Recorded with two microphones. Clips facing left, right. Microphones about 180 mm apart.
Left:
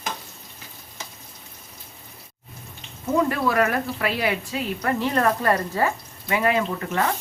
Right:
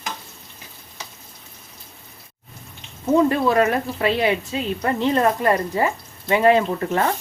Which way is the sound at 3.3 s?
25° right (ahead or behind).